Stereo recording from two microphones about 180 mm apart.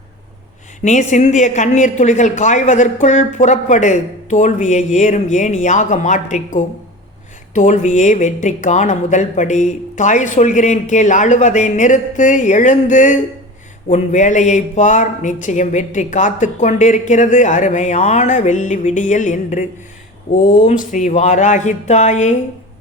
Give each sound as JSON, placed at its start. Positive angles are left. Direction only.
{"t": 0.9, "sound": "speech", "side_deg": 40}
{"t": 20.7, "sound": "speech", "side_deg": 40}